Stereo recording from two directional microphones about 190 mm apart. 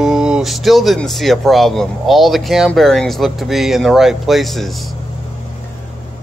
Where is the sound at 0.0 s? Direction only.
5° right (ahead or behind).